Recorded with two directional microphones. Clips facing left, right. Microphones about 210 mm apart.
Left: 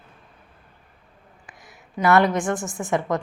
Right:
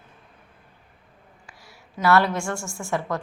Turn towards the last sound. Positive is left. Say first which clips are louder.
# left 4 dB
turn(degrees=20)  # may be behind; listen again after turning